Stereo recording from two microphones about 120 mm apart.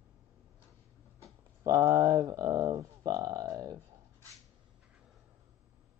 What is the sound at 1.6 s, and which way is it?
Speech, 30° right (ahead or behind).